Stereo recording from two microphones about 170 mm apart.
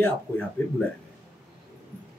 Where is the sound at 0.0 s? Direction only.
10° left (ahead or behind).